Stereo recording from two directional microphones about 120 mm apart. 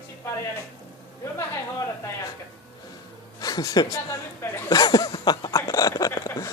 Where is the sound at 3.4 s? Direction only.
30° left (ahead or behind).